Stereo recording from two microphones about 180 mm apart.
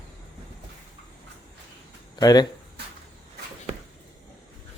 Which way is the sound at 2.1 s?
20° left (ahead or behind).